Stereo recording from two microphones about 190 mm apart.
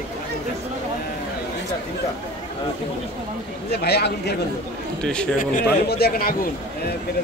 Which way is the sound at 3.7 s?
60° left (ahead or behind).